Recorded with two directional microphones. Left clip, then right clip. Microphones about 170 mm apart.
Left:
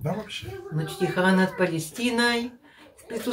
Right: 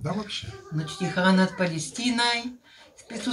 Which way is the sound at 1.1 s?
15° left (ahead or behind).